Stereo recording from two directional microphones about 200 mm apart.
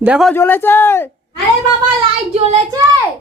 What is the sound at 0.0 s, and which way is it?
Speech, 5° right (ahead or behind).